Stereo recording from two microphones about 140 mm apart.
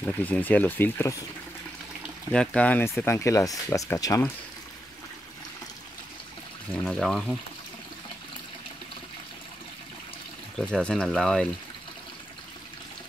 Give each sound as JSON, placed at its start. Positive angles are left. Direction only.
{"t": 0.0, "sound": "speech", "side_deg": 10}
{"t": 2.3, "sound": "speech", "side_deg": 5}
{"t": 6.7, "sound": "speech", "side_deg": 5}
{"t": 10.6, "sound": "speech", "side_deg": 5}